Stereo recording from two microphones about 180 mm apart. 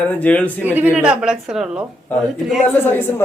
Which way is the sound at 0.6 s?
10° right (ahead or behind).